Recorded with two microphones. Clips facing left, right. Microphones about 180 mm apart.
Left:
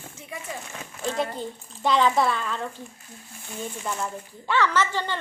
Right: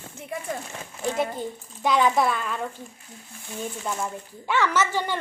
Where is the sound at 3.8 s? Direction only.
10° right (ahead or behind).